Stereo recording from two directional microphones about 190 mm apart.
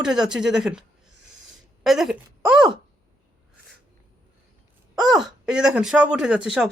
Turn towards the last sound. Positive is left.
turn(degrees=-5)  # may be behind; listen again after turning